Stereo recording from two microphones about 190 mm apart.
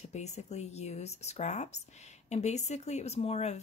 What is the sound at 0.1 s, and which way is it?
Speech, 35° left (ahead or behind).